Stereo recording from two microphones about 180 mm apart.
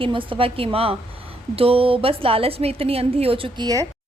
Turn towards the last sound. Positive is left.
turn(degrees=-20)  # may be behind; listen again after turning